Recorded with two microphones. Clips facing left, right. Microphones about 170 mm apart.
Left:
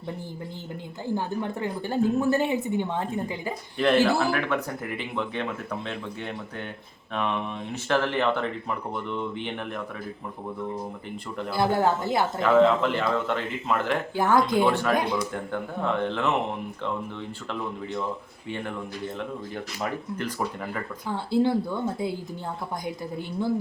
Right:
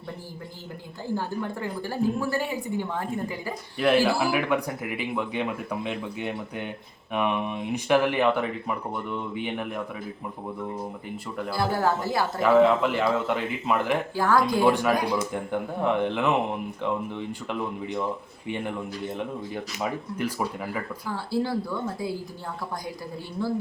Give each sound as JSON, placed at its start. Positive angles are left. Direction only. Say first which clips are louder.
{"t": 1.1, "sound": "a woman's voice", "louder": "left 1 dB", "side_deg": 20}
{"t": 3.8, "sound": "speech", "louder": "even", "side_deg": -5}
{"t": 11.5, "sound": "a woman's voice", "louder": "left 2 dB", "side_deg": 20}
{"t": 12.4, "sound": "speech", "louder": "right 1 dB", "side_deg": -5}
{"t": 14.2, "sound": "a woman's voice", "louder": "left 2 dB", "side_deg": 20}
{"t": 14.6, "sound": "speech", "louder": "right 1 dB", "side_deg": -10}
{"t": 19.8, "sound": "speech", "louder": "right 1 dB", "side_deg": -10}
{"t": 21.1, "sound": "a woman's voice", "louder": "left 4 dB", "side_deg": 20}
{"t": 23.4, "sound": "a woman's voice", "louder": "left 2 dB", "side_deg": 20}